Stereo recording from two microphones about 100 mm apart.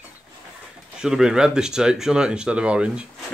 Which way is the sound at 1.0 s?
5° right (ahead or behind).